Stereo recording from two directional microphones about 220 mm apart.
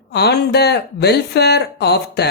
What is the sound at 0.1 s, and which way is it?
Speech, 45° left (ahead or behind).